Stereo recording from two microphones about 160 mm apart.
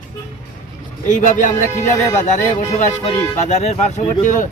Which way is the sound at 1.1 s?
50° left (ahead or behind).